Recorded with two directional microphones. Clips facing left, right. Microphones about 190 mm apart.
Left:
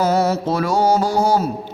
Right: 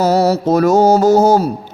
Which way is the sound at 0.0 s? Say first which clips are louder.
Right 4 dB; 40° right (ahead or behind).